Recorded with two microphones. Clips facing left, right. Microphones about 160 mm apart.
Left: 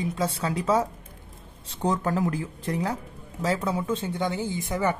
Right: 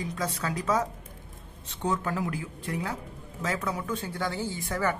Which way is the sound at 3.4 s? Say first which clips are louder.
Left 5 dB; 30° left (ahead or behind).